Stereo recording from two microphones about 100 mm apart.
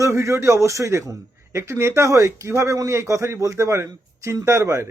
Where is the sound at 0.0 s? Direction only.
30° right (ahead or behind).